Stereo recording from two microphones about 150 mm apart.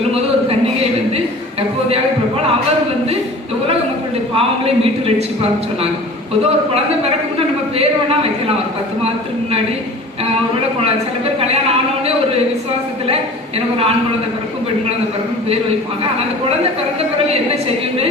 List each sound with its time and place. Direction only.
4.4 s a man's voice: 40° right (ahead or behind)
7.3 s speech: 40° right (ahead or behind)